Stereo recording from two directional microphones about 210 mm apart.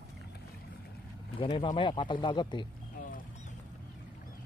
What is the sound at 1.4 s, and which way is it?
Speech, 25° left (ahead or behind).